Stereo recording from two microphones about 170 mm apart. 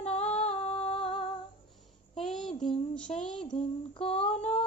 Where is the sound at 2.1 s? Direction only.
5° left (ahead or behind).